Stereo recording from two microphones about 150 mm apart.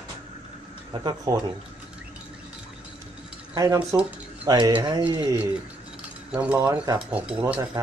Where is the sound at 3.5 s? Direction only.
20° right (ahead or behind).